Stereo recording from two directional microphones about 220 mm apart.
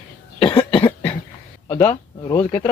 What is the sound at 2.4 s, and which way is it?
Speech, 10° left (ahead or behind).